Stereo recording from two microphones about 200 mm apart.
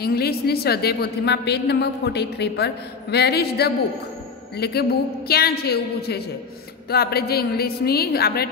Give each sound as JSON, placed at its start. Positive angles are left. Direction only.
{"t": 0.0, "sound": "a woman's voice", "side_deg": 50}